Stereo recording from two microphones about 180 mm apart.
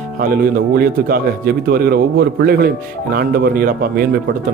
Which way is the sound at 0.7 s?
55° right (ahead or behind).